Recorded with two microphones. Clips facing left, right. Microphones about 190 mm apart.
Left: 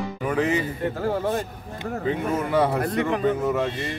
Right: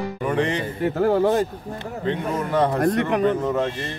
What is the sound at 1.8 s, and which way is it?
Speech, 10° left (ahead or behind).